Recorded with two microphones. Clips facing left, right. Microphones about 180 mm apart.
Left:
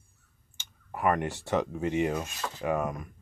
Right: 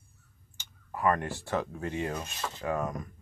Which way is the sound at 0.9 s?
20° left (ahead or behind).